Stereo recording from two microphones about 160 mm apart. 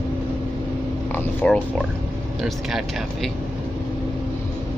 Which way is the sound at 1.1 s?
5° left (ahead or behind).